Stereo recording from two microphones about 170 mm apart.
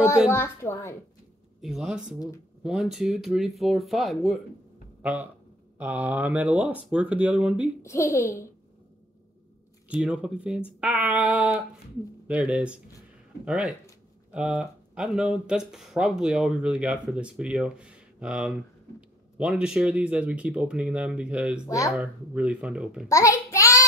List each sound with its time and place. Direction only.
0.3 s a child's voice: 15° left (ahead or behind)
1.6 s speech: 5° right (ahead or behind)
7.8 s a child's voice: 15° left (ahead or behind)
9.9 s speech: 5° right (ahead or behind)
21.6 s speech: 20° left (ahead or behind)
21.9 s speech: 5° right (ahead or behind)
23.0 s a sound: 20° left (ahead or behind)